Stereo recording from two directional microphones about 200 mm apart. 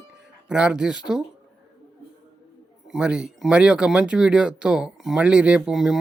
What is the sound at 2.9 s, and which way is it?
Speech, 5° right (ahead or behind).